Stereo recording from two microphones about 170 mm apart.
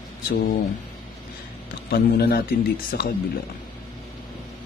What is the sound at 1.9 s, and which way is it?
Speech, 65° left (ahead or behind).